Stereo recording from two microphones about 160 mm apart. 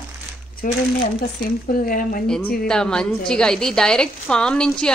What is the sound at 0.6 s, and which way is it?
Speech, 60° left (ahead or behind).